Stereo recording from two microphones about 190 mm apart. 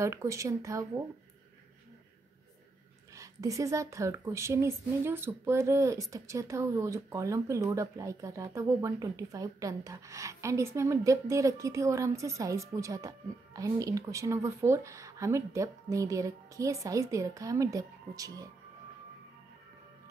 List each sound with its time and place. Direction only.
0.0 s a woman's voice: 15° right (ahead or behind)
3.2 s a woman's voice: 15° right (ahead or behind)